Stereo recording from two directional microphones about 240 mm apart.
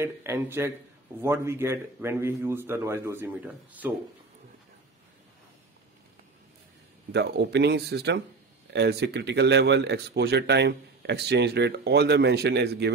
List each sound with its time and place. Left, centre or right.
0.0 s a man's voice: centre
7.1 s speech: right